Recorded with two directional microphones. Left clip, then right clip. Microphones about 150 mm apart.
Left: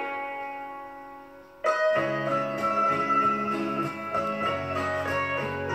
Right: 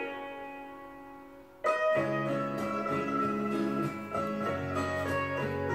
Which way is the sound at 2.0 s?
30° right (ahead or behind).